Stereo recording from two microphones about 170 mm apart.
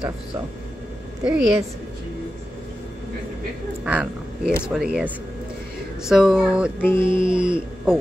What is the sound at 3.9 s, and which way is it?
Speech, 5° right (ahead or behind).